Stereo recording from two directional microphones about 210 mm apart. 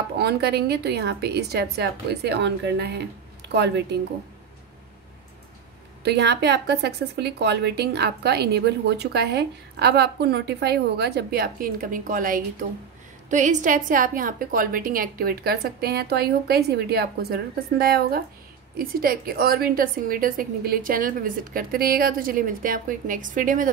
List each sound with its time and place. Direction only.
0.2 s a woman's voice: 50° right (ahead or behind)
6.0 s a woman's voice: 50° right (ahead or behind)